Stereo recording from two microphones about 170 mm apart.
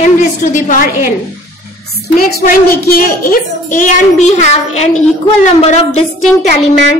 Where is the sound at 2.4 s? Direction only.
60° left (ahead or behind); by 6.0 s 40° left (ahead or behind).